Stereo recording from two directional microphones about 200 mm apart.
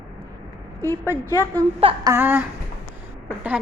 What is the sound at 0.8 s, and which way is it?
Speech, 10° left (ahead or behind).